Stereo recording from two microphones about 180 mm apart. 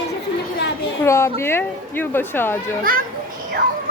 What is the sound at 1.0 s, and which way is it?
Speech, 15° left (ahead or behind).